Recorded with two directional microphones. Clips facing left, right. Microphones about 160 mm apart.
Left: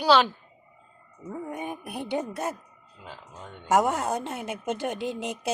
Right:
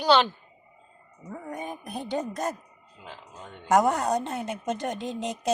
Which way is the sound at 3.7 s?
5° left (ahead or behind).